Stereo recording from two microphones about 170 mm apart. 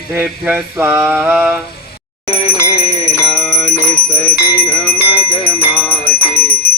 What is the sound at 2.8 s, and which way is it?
Bell, 40° left (ahead or behind).